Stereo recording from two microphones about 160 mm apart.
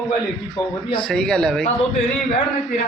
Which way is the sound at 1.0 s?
5° left (ahead or behind).